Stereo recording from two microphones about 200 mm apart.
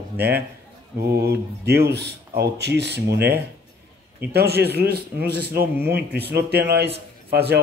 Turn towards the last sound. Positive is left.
turn(degrees=-55)  # may be behind; listen again after turning